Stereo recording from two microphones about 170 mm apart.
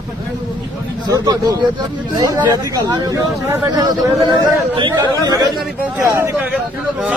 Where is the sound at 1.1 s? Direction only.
20° right (ahead or behind).